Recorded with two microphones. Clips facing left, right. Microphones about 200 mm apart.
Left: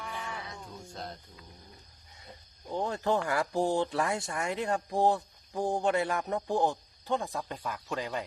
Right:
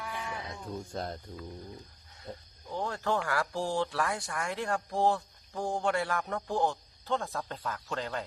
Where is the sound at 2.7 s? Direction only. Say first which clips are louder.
Left 2 dB; 20° left (ahead or behind).